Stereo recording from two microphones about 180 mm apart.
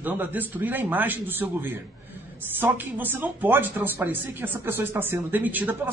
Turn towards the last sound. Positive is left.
turn(degrees=-10)  # may be behind; listen again after turning